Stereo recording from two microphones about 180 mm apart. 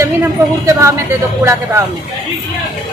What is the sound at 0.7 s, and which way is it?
Speech, 15° right (ahead or behind).